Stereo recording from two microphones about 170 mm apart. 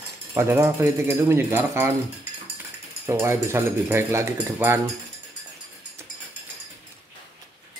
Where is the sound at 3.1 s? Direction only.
15° right (ahead or behind).